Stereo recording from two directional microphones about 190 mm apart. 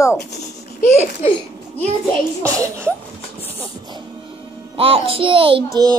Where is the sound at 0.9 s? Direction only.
35° left (ahead or behind).